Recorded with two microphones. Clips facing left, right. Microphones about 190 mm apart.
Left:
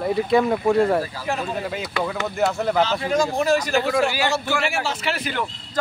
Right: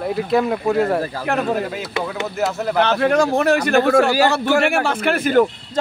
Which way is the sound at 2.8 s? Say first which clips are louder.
Right 6 dB; 65° right (ahead or behind).